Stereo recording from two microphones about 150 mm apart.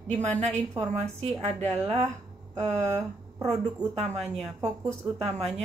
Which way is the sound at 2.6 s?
50° right (ahead or behind).